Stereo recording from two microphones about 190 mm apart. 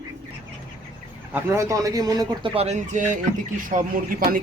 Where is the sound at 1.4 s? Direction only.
15° right (ahead or behind).